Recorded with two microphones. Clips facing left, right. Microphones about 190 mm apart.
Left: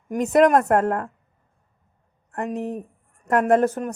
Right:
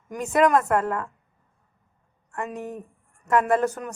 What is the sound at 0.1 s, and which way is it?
A woman's voice, 40° left (ahead or behind).